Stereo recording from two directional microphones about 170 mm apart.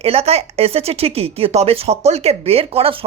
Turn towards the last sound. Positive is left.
turn(degrees=-35)  # may be behind; listen again after turning